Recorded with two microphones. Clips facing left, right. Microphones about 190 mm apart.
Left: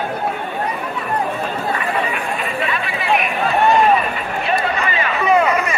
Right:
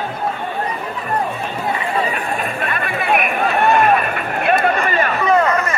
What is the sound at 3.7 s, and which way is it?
Run, 55° right (ahead or behind).